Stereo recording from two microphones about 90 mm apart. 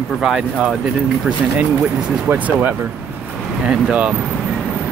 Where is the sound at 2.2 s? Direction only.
20° right (ahead or behind).